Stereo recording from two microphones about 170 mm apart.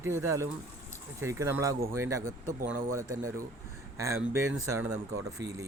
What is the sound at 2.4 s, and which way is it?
Speech, 50° right (ahead or behind).